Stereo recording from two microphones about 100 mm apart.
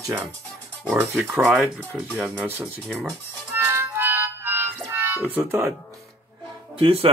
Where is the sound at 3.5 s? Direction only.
25° right (ahead or behind).